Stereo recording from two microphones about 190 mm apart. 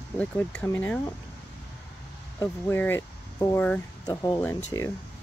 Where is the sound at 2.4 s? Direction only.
10° left (ahead or behind).